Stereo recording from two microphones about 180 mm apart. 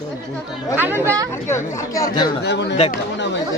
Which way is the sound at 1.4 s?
15° left (ahead or behind).